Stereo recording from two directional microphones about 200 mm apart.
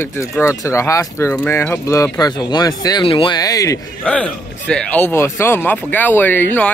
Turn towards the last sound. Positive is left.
turn(degrees=10)  # may be behind; listen again after turning